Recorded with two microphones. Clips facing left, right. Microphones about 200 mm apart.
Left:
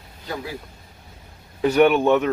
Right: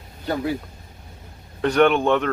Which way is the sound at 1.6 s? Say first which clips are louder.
Left 1 dB; 5° left (ahead or behind).